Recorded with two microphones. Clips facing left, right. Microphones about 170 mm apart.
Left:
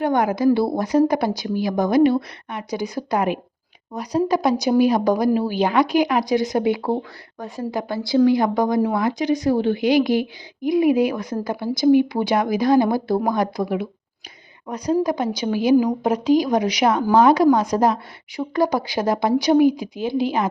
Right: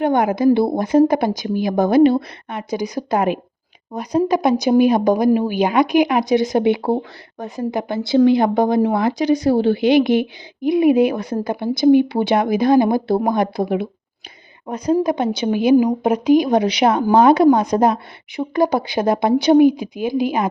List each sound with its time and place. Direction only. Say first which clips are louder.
0.0 s a woman's voice: right 3 dB; 20° right (ahead or behind)
14.9 s a woman's voice: right 2 dB; 25° right (ahead or behind)